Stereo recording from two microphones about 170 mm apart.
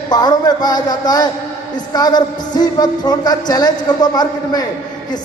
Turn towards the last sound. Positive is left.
turn(degrees=20)  # may be behind; listen again after turning